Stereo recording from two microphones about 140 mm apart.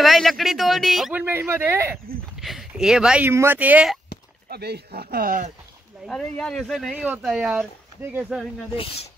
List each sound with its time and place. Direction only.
0.0 s speech: centre (ahead or behind)
1.1 s speech: 15° right (ahead or behind)
2.4 s speech: centre (ahead or behind)
3.3 s speech: 15° right (ahead or behind)
5.1 s speech: 70° right (ahead or behind)
6.0 s speech: 5° left (ahead or behind); by 8.2 s 15° right (ahead or behind)
8.2 s speech: 5° right (ahead or behind)
8.7 s speech: 40° left (ahead or behind)